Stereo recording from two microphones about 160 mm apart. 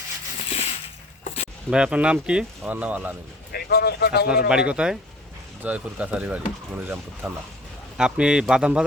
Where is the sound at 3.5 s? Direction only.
90° left.